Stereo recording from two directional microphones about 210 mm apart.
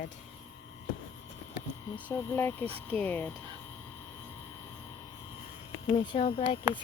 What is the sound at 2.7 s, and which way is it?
Speech, 30° right (ahead or behind).